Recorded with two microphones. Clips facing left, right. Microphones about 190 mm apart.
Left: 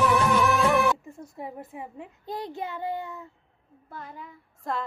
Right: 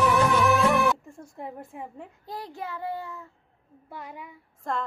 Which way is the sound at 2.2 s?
20° left (ahead or behind).